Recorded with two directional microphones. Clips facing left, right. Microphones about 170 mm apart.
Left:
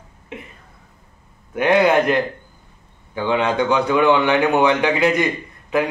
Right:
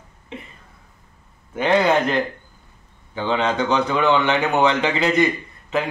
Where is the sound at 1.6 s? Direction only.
10° left (ahead or behind).